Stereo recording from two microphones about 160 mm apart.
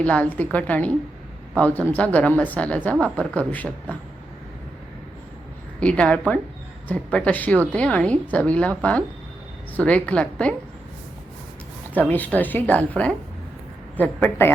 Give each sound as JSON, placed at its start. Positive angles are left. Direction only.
{"t": 0.0, "sound": "a woman's voice", "side_deg": 10}
{"t": 5.8, "sound": "a woman's voice", "side_deg": 5}
{"t": 11.9, "sound": "a woman's voice", "side_deg": 10}
{"t": 13.9, "sound": "a woman's voice", "side_deg": 10}